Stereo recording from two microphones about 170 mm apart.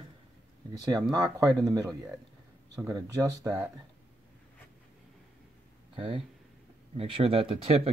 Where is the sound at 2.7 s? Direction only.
20° right (ahead or behind).